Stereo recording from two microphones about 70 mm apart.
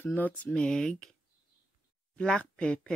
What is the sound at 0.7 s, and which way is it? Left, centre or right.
Speech, centre.